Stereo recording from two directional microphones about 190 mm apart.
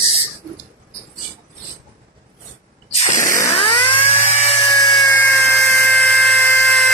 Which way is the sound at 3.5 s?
25° left (ahead or behind).